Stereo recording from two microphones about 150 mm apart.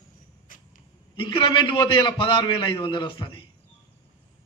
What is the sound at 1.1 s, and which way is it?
A man's voice, 35° left (ahead or behind).